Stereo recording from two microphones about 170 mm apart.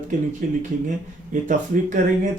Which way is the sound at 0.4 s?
50° right (ahead or behind).